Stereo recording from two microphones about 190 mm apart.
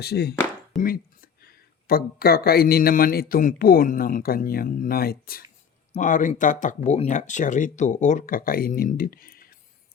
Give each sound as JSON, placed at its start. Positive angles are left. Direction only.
{"t": 0.0, "sound": "speech", "side_deg": 60}